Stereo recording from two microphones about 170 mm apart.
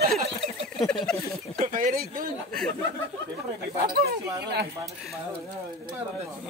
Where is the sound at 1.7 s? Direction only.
55° right (ahead or behind).